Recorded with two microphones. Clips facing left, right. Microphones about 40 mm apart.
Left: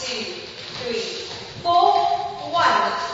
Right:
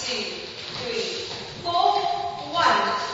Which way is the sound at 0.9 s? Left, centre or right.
Centre.